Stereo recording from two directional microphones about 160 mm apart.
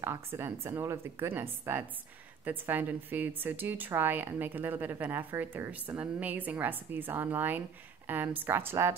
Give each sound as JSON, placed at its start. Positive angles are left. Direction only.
{"t": 0.0, "sound": "a woman's voice", "side_deg": -15}